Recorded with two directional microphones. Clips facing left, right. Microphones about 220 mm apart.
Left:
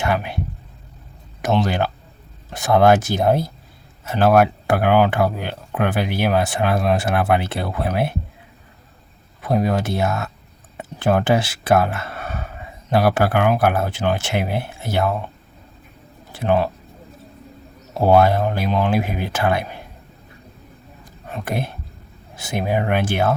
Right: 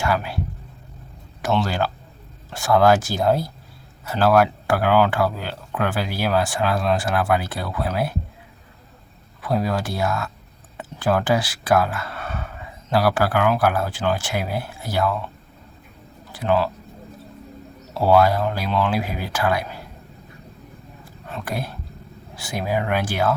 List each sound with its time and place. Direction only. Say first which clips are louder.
0.0 s speech: left 1 dB; 20° left (ahead or behind)
1.4 s speech: left 2 dB; 20° left (ahead or behind)
9.4 s speech: left 3 dB; 20° left (ahead or behind)
16.3 s speech: left 2 dB; 25° left (ahead or behind)
18.2 s speech: left 2 dB; 25° left (ahead or behind)
21.0 s a sound: left 2 dB; 20° left (ahead or behind)
22.4 s speech: left 3 dB; 25° left (ahead or behind)